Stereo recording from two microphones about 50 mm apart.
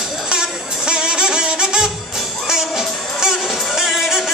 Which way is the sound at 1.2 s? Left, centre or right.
Centre.